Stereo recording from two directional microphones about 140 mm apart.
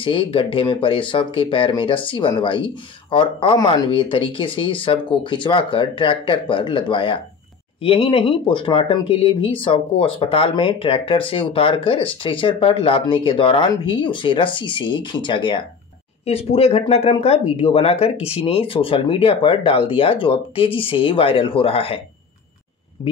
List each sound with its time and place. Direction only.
0.0 s speech: 40° left (ahead or behind)